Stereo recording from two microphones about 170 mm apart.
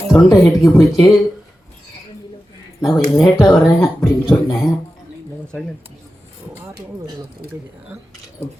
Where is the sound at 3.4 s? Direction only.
20° left (ahead or behind).